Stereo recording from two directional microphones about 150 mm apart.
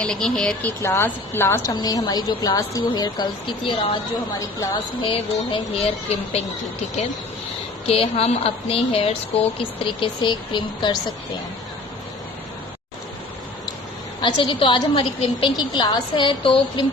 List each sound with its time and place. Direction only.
0.0 s speech: 5° left (ahead or behind)
0.8 s a woman's voice: 15° left (ahead or behind); by 4.0 s 35° left (ahead or behind)
4.4 s a woman's voice: 25° left (ahead or behind)
5.0 s a woman's voice: 40° left (ahead or behind)
7.9 s a woman's voice: 40° left (ahead or behind)
14.2 s a woman's voice: 35° left (ahead or behind)